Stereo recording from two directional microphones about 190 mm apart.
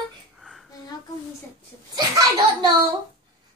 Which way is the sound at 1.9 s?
20° right (ahead or behind).